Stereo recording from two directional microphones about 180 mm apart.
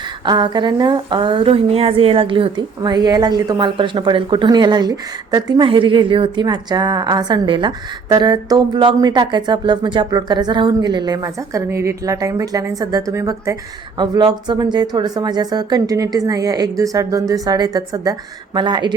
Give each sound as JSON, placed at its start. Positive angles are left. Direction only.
{"t": 0.3, "sound": "speech", "side_deg": -25}